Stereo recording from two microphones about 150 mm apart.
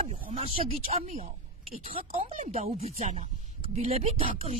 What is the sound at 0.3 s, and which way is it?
Snake, 40° right (ahead or behind).